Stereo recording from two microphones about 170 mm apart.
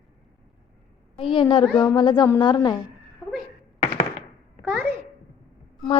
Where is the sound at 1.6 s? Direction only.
10° left (ahead or behind).